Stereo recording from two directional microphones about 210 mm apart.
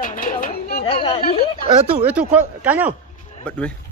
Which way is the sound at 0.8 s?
25° left (ahead or behind).